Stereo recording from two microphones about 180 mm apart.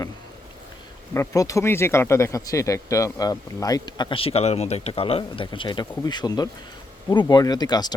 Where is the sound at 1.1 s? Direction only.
15° left (ahead or behind).